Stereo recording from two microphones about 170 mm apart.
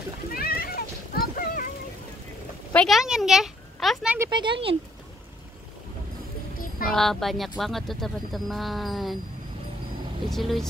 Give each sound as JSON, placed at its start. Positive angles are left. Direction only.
{"t": 0.3, "sound": "a sound", "side_deg": 60}
{"t": 2.7, "sound": "a woman's voice", "side_deg": 5}
{"t": 4.2, "sound": "speech", "side_deg": -25}
{"t": 6.5, "sound": "a sound", "side_deg": 55}
{"t": 6.9, "sound": "speech", "side_deg": 0}
{"t": 10.3, "sound": "speech", "side_deg": 0}